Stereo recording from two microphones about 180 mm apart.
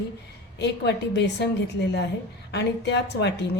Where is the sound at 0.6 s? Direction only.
70° left (ahead or behind).